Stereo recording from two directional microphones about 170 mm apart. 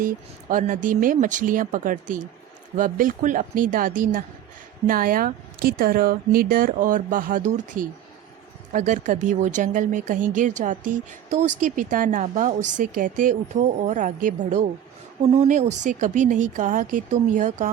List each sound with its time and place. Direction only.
0.0 s speech: 50° right (ahead or behind)